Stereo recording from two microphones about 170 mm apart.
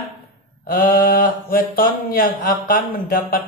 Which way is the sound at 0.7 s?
55° left (ahead or behind).